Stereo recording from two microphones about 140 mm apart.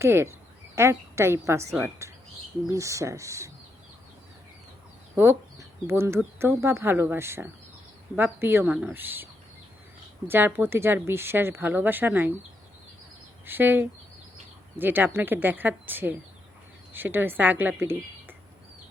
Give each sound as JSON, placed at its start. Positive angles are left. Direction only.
{"t": 0.0, "sound": "a woman's voice", "side_deg": -20}
{"t": 2.0, "sound": "bird", "side_deg": -20}
{"t": 2.6, "sound": "a woman's voice", "side_deg": -25}
{"t": 5.1, "sound": "speech", "side_deg": -20}
{"t": 10.2, "sound": "speech", "side_deg": -15}
{"t": 13.4, "sound": "a woman's voice", "side_deg": -15}